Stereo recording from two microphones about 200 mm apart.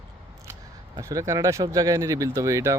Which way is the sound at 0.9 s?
15° right (ahead or behind).